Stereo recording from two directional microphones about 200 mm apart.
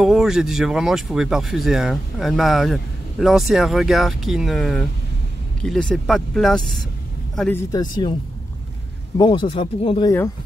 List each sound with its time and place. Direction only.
0.0 s speech: centre (ahead or behind)
7.7 s speech: 20° left (ahead or behind)
9.2 s speech: 25° left (ahead or behind)